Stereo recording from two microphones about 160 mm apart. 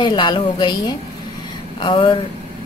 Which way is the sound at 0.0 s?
30° left (ahead or behind).